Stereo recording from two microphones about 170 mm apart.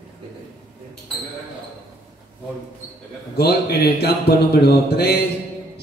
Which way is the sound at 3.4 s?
70° left (ahead or behind).